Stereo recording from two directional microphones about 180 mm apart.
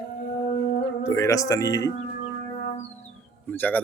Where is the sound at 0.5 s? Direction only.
40° left (ahead or behind).